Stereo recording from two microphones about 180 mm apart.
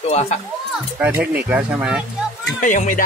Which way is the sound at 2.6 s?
45° left (ahead or behind).